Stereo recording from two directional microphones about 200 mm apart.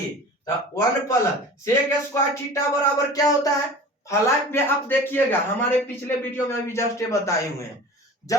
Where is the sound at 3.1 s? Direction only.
15° left (ahead or behind).